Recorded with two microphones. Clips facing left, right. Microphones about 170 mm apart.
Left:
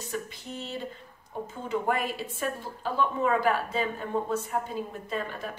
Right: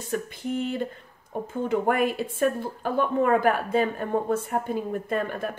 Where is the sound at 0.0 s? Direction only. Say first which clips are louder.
Right 6 dB; 55° right (ahead or behind).